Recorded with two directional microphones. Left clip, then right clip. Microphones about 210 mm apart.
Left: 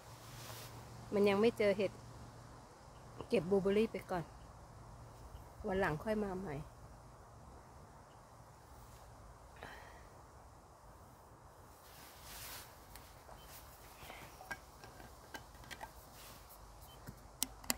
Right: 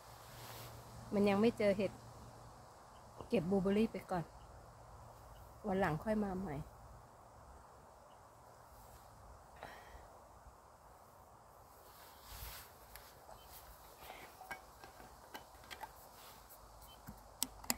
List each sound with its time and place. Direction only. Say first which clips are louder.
1.1 s speech: left 2 dB; 25° left (ahead or behind)
3.3 s speech: left 2 dB; 25° left (ahead or behind)
5.7 s speech: even; 20° left (ahead or behind)
17.4 s a sound: left 1 dB; 10° left (ahead or behind)